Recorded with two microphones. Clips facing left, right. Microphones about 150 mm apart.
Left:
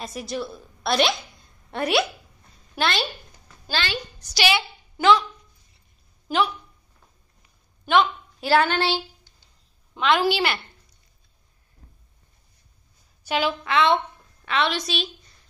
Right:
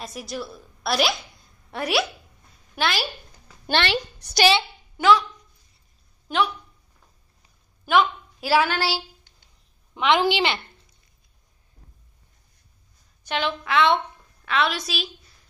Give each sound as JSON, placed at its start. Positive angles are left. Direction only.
{"t": 0.0, "sound": "a woman's voice", "side_deg": 0}
{"t": 3.6, "sound": "a woman's voice", "side_deg": -65}
{"t": 4.9, "sound": "speech", "side_deg": 0}
{"t": 6.2, "sound": "speech", "side_deg": 0}
{"t": 7.8, "sound": "a woman's voice", "side_deg": -5}
{"t": 9.9, "sound": "a woman's voice", "side_deg": -15}
{"t": 13.2, "sound": "a woman's voice", "side_deg": 5}